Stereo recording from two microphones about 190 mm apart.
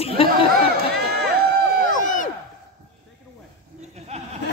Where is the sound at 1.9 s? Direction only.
45° left (ahead or behind).